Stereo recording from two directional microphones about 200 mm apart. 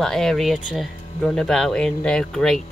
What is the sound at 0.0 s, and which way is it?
Speech, centre (ahead or behind).